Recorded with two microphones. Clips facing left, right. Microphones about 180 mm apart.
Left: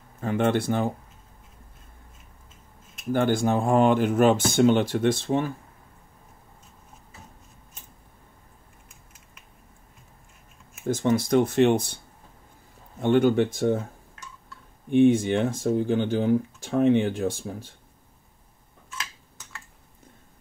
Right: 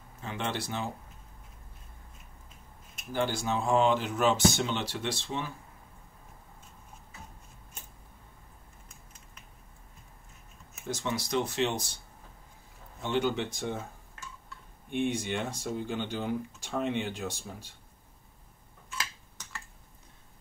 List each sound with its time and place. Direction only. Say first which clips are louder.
0.2 s speech: left 11 dB; 50° left (ahead or behind)
3.1 s speech: left 8 dB; 55° left (ahead or behind)
10.8 s speech: left 11 dB; 50° left (ahead or behind)
13.0 s speech: left 10 dB; 50° left (ahead or behind)
15.0 s speech: left 11 dB; 50° left (ahead or behind)